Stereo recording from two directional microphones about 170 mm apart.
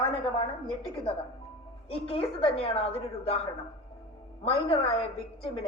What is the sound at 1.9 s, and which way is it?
A woman's voice, 35° left (ahead or behind).